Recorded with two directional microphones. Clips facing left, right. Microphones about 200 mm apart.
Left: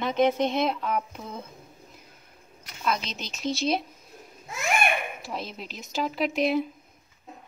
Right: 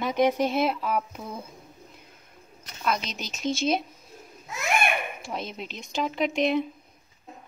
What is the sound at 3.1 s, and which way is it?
Speech, 30° left (ahead or behind).